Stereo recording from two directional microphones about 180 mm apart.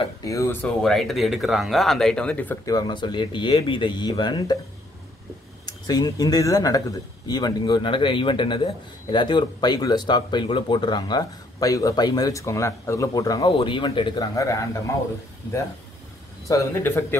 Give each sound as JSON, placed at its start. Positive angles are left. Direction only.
{"t": 0.0, "sound": "speech", "side_deg": 20}
{"t": 5.7, "sound": "speech", "side_deg": 20}
{"t": 16.4, "sound": "speech", "side_deg": 15}